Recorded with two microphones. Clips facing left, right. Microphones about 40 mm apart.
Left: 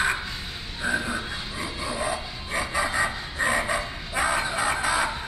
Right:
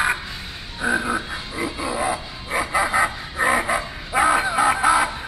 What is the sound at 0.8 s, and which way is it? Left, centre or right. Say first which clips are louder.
Dog: right 5 dB; right.